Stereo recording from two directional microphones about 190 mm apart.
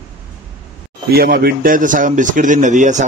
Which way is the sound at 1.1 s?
50° right (ahead or behind).